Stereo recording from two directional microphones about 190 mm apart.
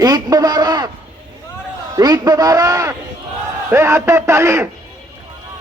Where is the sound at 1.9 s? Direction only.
20° right (ahead or behind).